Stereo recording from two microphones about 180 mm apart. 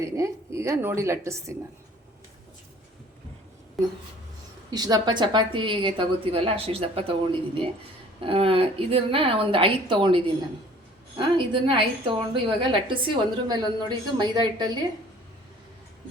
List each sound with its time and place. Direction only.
0.0 s a woman's voice: 15° right (ahead or behind)
4.7 s a woman's voice: 20° right (ahead or behind)